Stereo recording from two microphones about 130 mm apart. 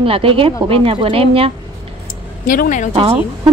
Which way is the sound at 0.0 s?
45° right (ahead or behind).